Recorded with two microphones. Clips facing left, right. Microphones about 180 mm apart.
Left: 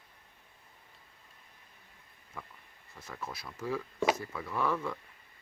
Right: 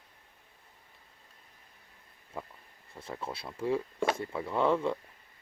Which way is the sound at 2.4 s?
30° right (ahead or behind).